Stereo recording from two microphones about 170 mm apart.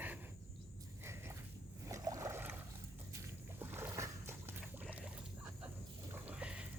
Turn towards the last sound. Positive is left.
turn(degrees=-5)  # may be behind; listen again after turning